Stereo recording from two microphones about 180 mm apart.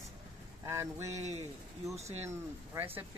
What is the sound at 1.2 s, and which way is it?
Speech, 40° right (ahead or behind).